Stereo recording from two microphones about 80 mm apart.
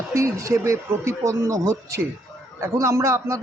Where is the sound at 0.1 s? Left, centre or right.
Right.